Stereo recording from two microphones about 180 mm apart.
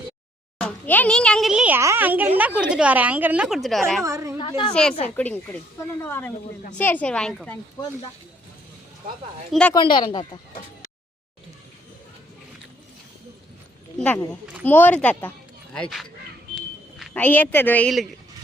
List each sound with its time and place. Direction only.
0.6 s a woman's voice: 10° left (ahead or behind)
4.0 s a woman's voice: 15° right (ahead or behind)
4.4 s speech: 25° left (ahead or behind)
4.7 s a woman's voice: 5° left (ahead or behind)
9.5 s speech: 5° left (ahead or behind)
9.7 s speech: 25° left (ahead or behind)
14.6 s a woman's voice: 10° left (ahead or behind)